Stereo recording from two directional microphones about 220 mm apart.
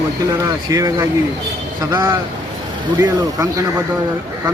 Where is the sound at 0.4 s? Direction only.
15° right (ahead or behind).